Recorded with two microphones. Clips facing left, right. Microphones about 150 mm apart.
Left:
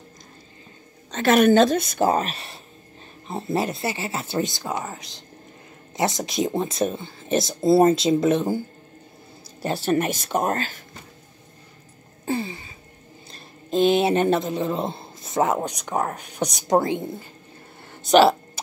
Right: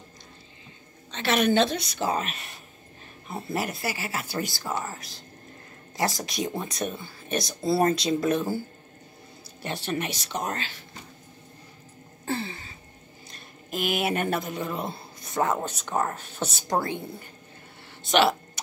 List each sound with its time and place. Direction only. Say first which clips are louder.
1.1 s a woman's voice: left 7 dB; 45° left (ahead or behind); by 8.6 s 20° left (ahead or behind)
9.6 s a woman's voice: left 8 dB; 40° left (ahead or behind)
12.3 s a sound: left 4 dB; 15° left (ahead or behind)
13.3 s speech: left 10 dB; 25° left (ahead or behind)
18.0 s speech: left 7 dB; 35° left (ahead or behind)